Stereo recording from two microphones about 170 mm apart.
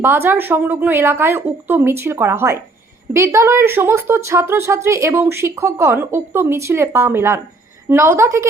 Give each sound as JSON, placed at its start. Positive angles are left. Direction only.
{"t": 0.0, "sound": "a woman's voice", "side_deg": -10}